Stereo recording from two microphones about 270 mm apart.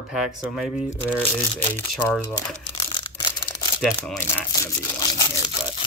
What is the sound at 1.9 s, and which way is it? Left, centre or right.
Speech, centre.